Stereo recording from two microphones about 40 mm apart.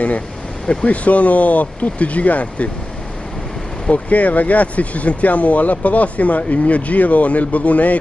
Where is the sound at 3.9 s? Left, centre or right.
Left.